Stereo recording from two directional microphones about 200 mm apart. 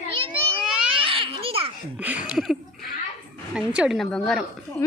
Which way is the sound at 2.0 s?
5° right (ahead or behind).